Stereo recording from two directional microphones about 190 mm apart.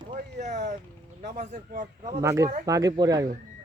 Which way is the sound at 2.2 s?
15° right (ahead or behind).